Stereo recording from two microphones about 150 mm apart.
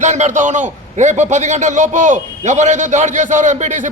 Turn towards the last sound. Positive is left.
turn(degrees=-55)  # may be behind; listen again after turning